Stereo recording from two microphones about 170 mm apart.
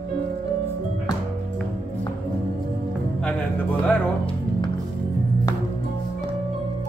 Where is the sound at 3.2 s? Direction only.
10° left (ahead or behind).